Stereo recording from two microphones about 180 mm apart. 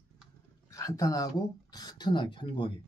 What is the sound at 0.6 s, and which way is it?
Speech, 20° left (ahead or behind).